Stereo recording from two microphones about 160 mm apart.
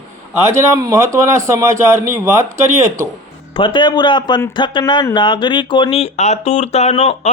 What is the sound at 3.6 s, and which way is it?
Speech, 30° left (ahead or behind).